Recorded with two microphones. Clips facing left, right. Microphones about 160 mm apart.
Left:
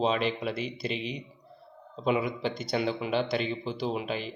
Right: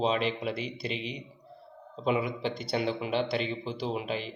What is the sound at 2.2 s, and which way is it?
A man's voice, 30° right (ahead or behind).